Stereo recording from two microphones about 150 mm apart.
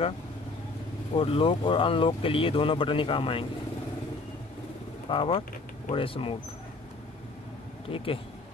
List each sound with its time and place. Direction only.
1.1 s speech: 35° left (ahead or behind)
5.1 s speech: 35° left (ahead or behind)
7.9 s speech: 35° left (ahead or behind)